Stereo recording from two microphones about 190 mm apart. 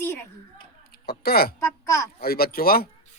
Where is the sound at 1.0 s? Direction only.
55° left (ahead or behind).